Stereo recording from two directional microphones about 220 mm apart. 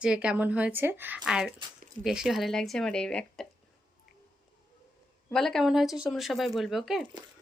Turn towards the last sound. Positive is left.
turn(degrees=0)  # may be behind; listen again after turning